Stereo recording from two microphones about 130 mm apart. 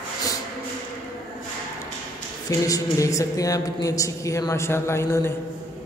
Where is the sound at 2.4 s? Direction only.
25° left (ahead or behind).